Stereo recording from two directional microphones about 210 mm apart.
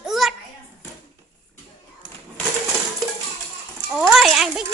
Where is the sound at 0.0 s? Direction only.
Centre (ahead or behind).